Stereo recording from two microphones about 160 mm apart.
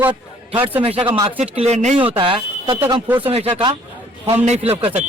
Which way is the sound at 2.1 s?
30° right (ahead or behind).